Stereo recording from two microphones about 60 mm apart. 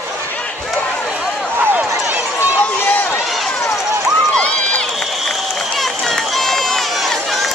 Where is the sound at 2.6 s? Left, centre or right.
Left.